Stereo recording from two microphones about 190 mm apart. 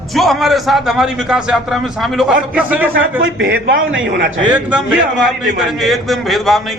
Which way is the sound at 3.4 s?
55° right (ahead or behind).